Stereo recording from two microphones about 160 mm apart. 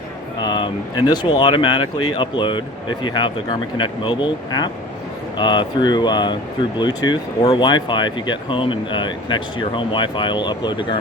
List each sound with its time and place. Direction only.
0.4 s speech: 30° left (ahead or behind)